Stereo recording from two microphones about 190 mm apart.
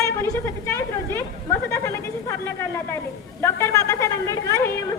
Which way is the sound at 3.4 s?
15° left (ahead or behind).